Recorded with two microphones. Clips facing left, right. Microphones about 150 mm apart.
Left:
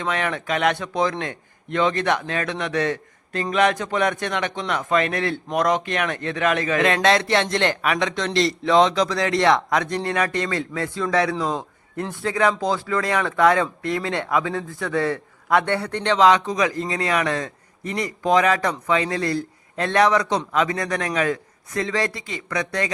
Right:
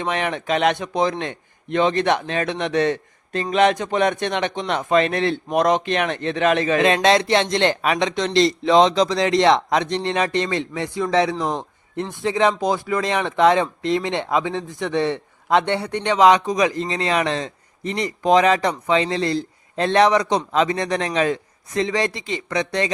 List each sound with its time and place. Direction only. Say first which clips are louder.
0.0 s speech: right 1 dB; 20° right (ahead or behind)